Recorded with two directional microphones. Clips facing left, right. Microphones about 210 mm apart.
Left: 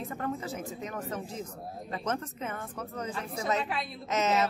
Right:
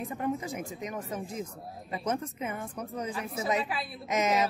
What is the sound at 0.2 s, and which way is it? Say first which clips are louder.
Speech: right 3 dB; 15° right (ahead or behind).